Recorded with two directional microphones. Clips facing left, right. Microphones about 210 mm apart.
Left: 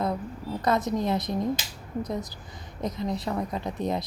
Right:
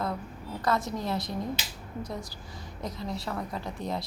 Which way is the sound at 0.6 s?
20° left (ahead or behind).